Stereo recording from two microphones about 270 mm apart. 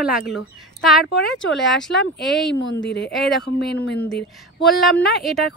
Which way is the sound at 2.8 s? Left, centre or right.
Left.